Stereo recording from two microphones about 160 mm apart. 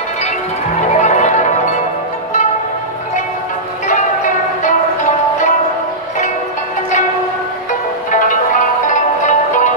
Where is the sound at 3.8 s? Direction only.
50° left (ahead or behind).